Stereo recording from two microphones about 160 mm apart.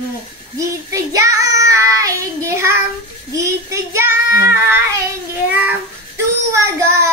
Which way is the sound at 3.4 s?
20° right (ahead or behind).